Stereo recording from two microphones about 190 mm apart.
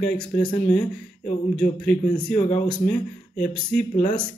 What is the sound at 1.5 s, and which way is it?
Speech, 5° left (ahead or behind).